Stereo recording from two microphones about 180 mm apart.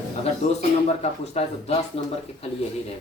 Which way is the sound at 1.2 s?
35° left (ahead or behind).